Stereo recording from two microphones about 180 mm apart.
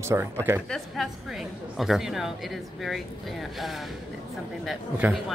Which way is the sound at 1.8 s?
Centre (ahead or behind).